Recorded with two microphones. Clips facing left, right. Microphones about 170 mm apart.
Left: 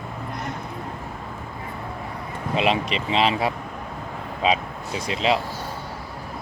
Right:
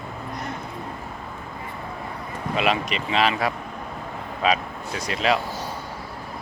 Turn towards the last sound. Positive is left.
turn(degrees=25)  # may be behind; listen again after turning